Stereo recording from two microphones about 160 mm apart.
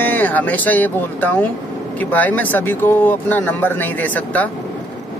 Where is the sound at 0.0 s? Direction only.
10° left (ahead or behind).